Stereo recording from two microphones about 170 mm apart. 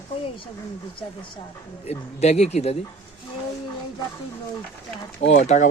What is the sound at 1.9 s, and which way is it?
Speech, 40° left (ahead or behind).